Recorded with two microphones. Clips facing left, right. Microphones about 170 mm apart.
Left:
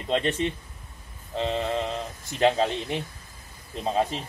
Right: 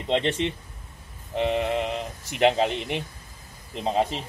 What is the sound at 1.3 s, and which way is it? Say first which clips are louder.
Speech: right 3 dB; 15° right (ahead or behind).